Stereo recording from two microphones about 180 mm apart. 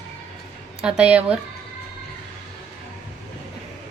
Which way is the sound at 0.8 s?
5° right (ahead or behind).